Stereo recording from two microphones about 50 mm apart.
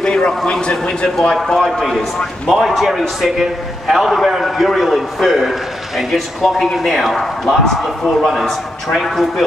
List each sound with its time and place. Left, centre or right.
0.0 s a sound: centre
0.4 s a man's voice: centre
2.5 s a man's voice: centre